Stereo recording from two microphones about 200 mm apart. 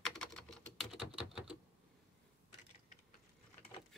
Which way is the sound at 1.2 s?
5° right (ahead or behind).